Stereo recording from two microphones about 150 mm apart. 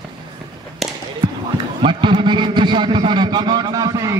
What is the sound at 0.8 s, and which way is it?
Basketball bounce, centre (ahead or behind).